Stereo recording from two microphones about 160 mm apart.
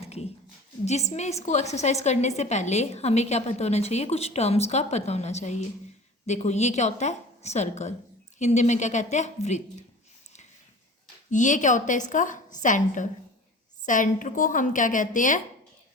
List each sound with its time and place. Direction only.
0.0 s a sound: 40° left (ahead or behind)
1.1 s a woman's voice: 45° left (ahead or behind)
11.3 s a woman's voice: 50° left (ahead or behind)